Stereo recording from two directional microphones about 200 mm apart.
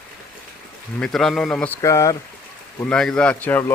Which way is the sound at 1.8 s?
15° left (ahead or behind).